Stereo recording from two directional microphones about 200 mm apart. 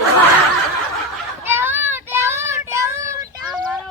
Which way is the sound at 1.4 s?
10° right (ahead or behind).